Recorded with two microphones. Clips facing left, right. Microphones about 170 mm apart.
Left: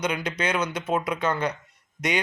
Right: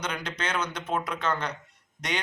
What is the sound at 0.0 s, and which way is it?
Speech, 10° left (ahead or behind).